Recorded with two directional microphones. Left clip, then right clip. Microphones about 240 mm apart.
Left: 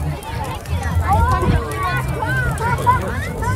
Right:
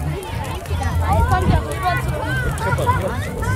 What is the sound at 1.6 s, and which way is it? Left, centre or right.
Run, left.